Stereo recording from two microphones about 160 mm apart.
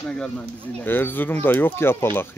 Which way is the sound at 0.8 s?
10° left (ahead or behind).